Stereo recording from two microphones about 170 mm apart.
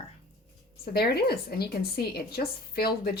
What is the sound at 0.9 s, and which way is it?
A woman's voice, 65° left (ahead or behind).